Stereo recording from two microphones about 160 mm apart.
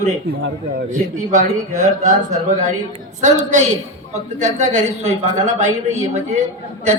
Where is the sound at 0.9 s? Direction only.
50° right (ahead or behind).